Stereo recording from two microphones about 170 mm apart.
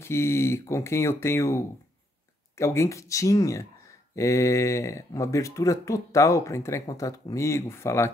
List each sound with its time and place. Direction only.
0.0 s speech: 15° left (ahead or behind)